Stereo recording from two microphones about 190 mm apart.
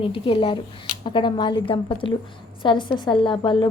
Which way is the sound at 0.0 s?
30° left (ahead or behind).